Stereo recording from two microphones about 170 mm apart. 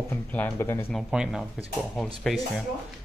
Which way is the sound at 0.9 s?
5° right (ahead or behind).